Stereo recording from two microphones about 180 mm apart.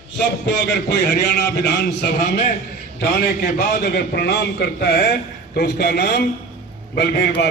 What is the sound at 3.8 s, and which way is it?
A man's voice, 65° left (ahead or behind).